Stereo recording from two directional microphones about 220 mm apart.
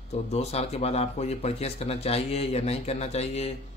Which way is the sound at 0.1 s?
30° left (ahead or behind).